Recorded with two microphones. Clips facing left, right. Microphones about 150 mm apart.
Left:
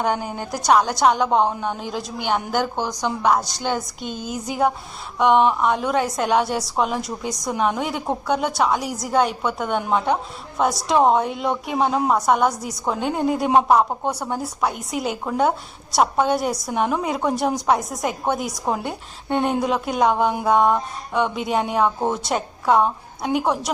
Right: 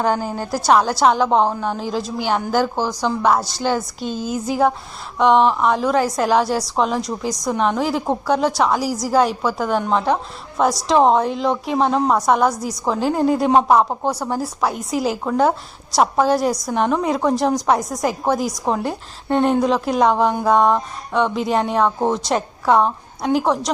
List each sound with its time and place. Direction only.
0.1 s a woman's voice: 5° right (ahead or behind)
4.0 s a woman's voice: 40° right (ahead or behind)
4.3 s a woman's voice: centre (ahead or behind)